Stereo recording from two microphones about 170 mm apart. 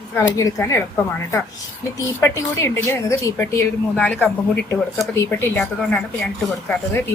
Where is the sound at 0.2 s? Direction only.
20° left (ahead or behind).